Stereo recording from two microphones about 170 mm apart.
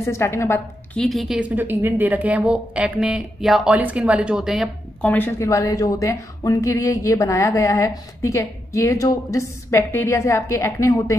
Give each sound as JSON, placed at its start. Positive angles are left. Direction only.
{"t": 0.0, "sound": "a woman's voice", "side_deg": 15}
{"t": 0.9, "sound": "a woman's voice", "side_deg": 0}
{"t": 5.0, "sound": "a woman's voice", "side_deg": 10}